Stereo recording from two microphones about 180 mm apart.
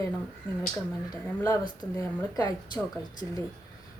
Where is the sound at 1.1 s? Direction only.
20° left (ahead or behind).